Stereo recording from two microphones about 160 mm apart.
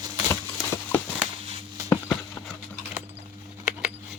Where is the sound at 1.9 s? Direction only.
10° left (ahead or behind).